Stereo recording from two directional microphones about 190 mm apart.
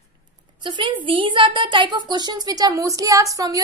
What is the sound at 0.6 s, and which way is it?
Speech, 25° right (ahead or behind).